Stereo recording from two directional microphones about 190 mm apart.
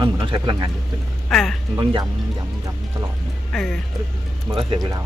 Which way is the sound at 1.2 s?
5° left (ahead or behind).